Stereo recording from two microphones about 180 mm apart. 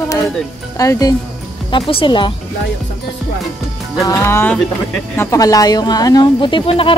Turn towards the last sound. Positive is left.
turn(degrees=30)  # may be behind; listen again after turning